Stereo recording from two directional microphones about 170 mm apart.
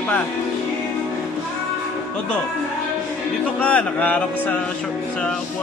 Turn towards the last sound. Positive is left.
turn(degrees=10)  # may be behind; listen again after turning